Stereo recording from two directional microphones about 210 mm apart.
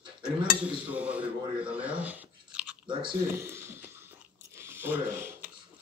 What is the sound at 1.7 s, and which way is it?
Chewing, 5° right (ahead or behind).